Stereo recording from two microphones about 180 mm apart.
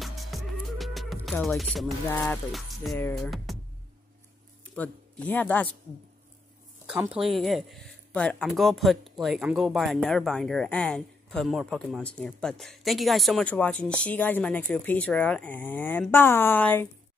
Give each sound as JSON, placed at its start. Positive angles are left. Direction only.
{"t": 0.0, "sound": "music", "side_deg": 0}
{"t": 3.2, "sound": "speech", "side_deg": 0}
{"t": 4.7, "sound": "speech", "side_deg": 10}
{"t": 7.2, "sound": "speech", "side_deg": 0}